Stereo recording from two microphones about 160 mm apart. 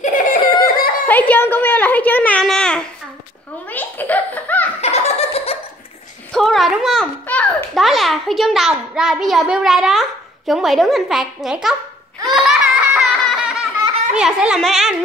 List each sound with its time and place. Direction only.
0.0 s giggle: 55° left (ahead or behind)
0.7 s a sound: 70° left (ahead or behind)
1.0 s a sound: 10° left (ahead or behind)
3.6 s giggle: 10° left (ahead or behind)
4.8 s giggle: 40° left (ahead or behind)
6.3 s a child's voice: centre (ahead or behind)
12.3 s laughter: centre (ahead or behind)
14.1 s speech: 5° right (ahead or behind)